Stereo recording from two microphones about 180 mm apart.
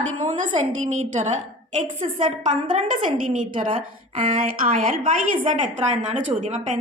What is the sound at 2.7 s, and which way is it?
Speech, 40° right (ahead or behind).